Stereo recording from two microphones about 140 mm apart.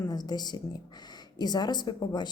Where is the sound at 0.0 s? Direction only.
30° left (ahead or behind).